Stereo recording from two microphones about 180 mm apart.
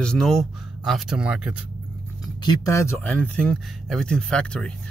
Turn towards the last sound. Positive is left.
turn(degrees=5)  # may be behind; listen again after turning